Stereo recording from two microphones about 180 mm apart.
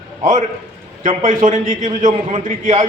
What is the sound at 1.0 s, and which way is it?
A man's voice, 45° right (ahead or behind).